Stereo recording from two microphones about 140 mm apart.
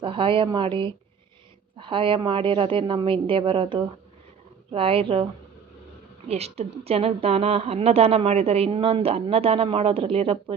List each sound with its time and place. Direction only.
0.0 s a woman's voice: 40° right (ahead or behind)
6.2 s a woman's voice: 45° right (ahead or behind)